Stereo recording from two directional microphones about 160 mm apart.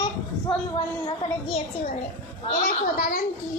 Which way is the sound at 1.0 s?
35° left (ahead or behind).